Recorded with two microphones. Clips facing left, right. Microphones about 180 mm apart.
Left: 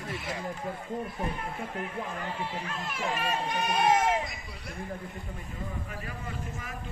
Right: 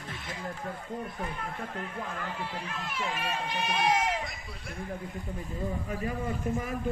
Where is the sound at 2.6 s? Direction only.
50° left (ahead or behind).